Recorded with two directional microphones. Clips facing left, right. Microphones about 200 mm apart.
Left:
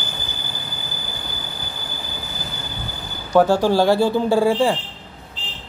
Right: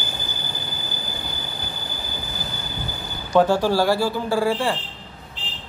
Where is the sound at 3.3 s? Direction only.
10° left (ahead or behind).